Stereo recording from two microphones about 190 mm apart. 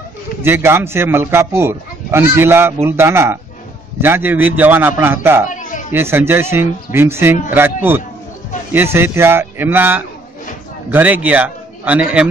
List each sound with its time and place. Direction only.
0.4 s speech: 10° right (ahead or behind)
5.5 s a sound: 45° left (ahead or behind)
5.9 s a man's voice: 10° right (ahead or behind)